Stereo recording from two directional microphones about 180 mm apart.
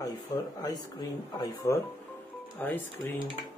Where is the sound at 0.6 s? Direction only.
20° left (ahead or behind).